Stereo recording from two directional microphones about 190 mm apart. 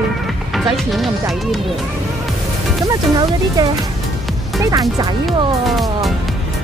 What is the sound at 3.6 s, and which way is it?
Speech, 20° right (ahead or behind).